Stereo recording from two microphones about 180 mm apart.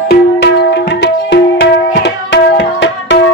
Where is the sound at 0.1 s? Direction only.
65° left (ahead or behind).